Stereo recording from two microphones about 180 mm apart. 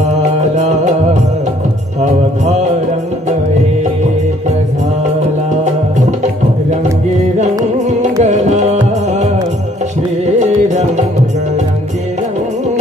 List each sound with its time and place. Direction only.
0.4 s music: 40° right (ahead or behind)
5.9 s music: 40° right (ahead or behind)
7.8 s music: 40° right (ahead or behind)